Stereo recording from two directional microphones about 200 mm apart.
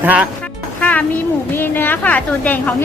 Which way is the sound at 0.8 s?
10° left (ahead or behind).